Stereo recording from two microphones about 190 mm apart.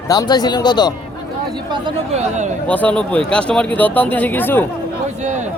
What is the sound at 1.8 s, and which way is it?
Speech, 35° right (ahead or behind).